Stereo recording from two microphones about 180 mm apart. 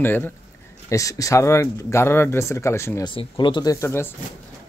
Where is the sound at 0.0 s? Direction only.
10° left (ahead or behind).